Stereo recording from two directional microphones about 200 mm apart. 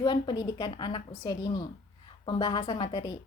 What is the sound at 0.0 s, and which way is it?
A woman's voice, 20° left (ahead or behind).